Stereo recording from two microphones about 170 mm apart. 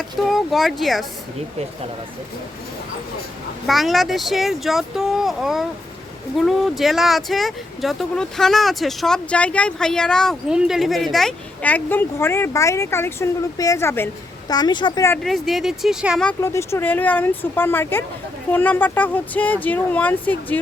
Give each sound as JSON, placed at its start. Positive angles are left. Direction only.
{"t": 0.2, "sound": "speech", "side_deg": 0}
{"t": 3.7, "sound": "speech", "side_deg": 0}
{"t": 14.5, "sound": "a woman's voice", "side_deg": 25}
{"t": 15.2, "sound": "speech", "side_deg": 0}
{"t": 16.4, "sound": "speech", "side_deg": 15}